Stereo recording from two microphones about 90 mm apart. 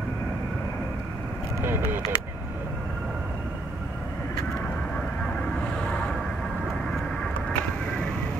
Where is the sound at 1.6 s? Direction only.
25° right (ahead or behind).